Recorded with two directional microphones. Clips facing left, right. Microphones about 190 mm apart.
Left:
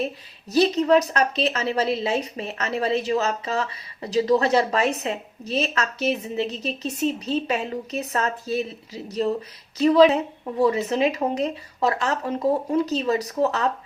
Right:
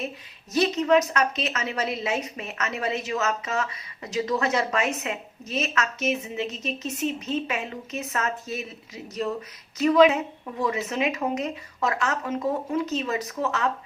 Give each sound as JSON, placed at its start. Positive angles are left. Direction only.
{"t": 0.5, "sound": "a woman's voice", "side_deg": 35}